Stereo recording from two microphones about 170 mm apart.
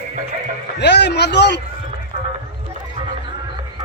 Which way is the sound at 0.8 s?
80° left.